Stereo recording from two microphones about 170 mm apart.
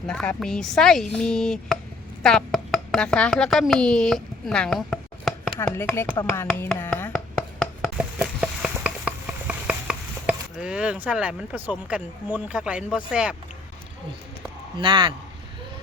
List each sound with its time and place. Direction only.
0.1 s speech: 5° left (ahead or behind)
7.9 s patter: 5° right (ahead or behind)
14.8 s a man's voice: 30° right (ahead or behind)